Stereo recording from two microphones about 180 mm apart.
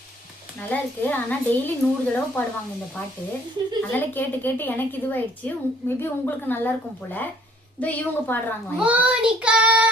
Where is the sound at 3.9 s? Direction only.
10° left (ahead or behind).